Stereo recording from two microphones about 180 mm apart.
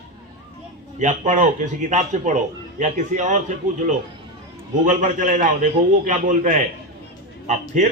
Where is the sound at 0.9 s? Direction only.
40° right (ahead or behind).